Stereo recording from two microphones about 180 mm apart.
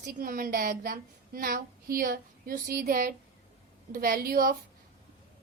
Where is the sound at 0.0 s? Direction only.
55° right (ahead or behind).